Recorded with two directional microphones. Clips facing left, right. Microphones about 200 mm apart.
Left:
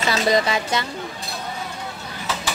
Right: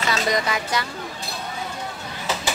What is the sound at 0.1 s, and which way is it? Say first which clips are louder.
Speech: left 4 dB; 30° left (ahead or behind).